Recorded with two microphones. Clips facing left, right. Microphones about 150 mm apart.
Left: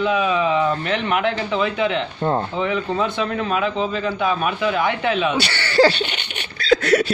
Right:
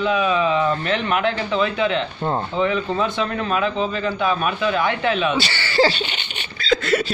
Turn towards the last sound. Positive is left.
turn(degrees=65)  # may be behind; listen again after turning